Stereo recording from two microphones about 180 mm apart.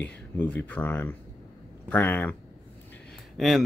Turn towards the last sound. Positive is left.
turn(degrees=0)  # may be behind; listen again after turning